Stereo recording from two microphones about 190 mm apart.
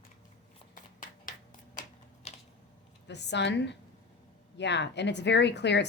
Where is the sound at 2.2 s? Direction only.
35° left (ahead or behind).